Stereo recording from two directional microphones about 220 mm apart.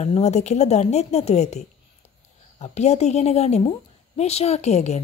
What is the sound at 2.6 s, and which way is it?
A woman's voice, 30° left (ahead or behind).